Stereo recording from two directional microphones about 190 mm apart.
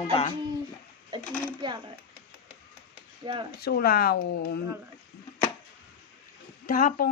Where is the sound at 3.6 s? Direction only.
55° left (ahead or behind).